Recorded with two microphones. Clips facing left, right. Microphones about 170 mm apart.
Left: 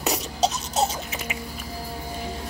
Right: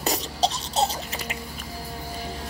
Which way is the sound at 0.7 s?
5° left (ahead or behind).